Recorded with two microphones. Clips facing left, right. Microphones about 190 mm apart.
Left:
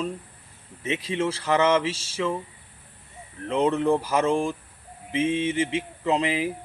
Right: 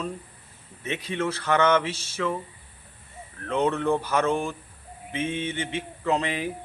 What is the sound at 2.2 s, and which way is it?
Speech, 15° left (ahead or behind).